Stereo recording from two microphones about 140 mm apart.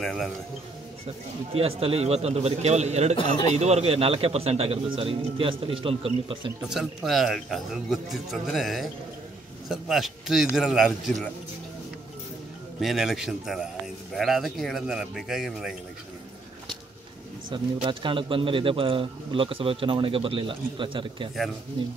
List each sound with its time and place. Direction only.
0.0 s speech: centre (ahead or behind)
1.5 s a man's voice: 45° right (ahead or behind)
6.7 s speech: centre (ahead or behind)
12.8 s speech: centre (ahead or behind)
17.5 s speech: 35° right (ahead or behind)